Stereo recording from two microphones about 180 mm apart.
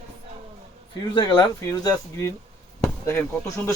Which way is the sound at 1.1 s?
25° left (ahead or behind).